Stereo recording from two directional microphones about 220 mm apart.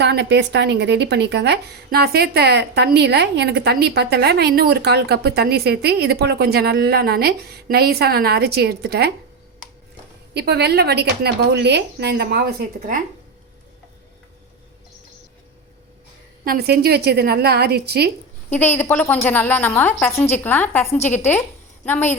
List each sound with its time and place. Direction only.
0.0 s a woman's voice: 50° right (ahead or behind)
10.3 s a woman's voice: 50° right (ahead or behind)
16.4 s a woman's voice: 45° right (ahead or behind)
18.5 s a woman's voice: 10° left (ahead or behind)
21.8 s a woman's voice: 10° left (ahead or behind)